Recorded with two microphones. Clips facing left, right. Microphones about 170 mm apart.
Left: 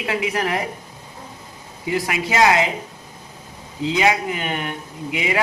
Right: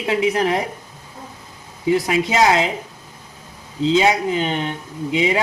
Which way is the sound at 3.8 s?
25° right (ahead or behind).